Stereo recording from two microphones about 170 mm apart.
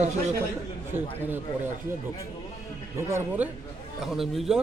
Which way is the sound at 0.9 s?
10° right (ahead or behind).